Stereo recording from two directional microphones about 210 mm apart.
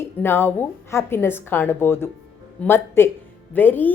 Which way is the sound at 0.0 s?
10° left (ahead or behind).